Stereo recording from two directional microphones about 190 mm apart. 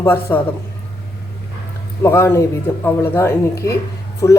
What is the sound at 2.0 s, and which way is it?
A man's voice, 15° left (ahead or behind).